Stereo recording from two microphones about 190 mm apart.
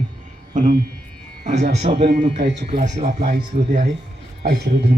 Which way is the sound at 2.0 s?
45° right (ahead or behind).